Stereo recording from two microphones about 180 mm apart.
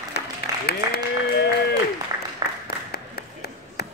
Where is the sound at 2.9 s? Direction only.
60° left (ahead or behind).